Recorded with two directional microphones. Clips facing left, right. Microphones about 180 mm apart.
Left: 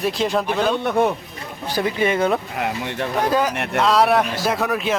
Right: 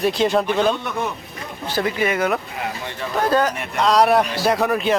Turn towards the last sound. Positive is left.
turn(degrees=0)  # may be behind; listen again after turning